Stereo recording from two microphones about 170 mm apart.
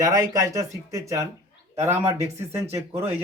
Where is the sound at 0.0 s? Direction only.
20° right (ahead or behind).